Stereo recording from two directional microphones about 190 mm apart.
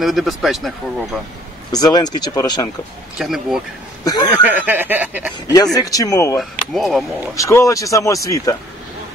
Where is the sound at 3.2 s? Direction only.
Centre (ahead or behind).